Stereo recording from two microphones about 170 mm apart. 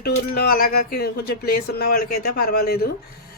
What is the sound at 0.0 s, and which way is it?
Speech, 65° left (ahead or behind).